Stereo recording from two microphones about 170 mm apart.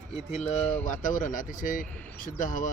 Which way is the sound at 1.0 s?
50° left (ahead or behind).